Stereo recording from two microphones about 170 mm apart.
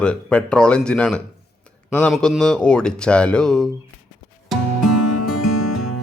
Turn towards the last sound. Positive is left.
turn(degrees=0)  # may be behind; listen again after turning